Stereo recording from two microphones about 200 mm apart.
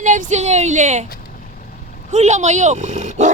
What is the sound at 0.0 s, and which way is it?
Speech, 35° right (ahead or behind).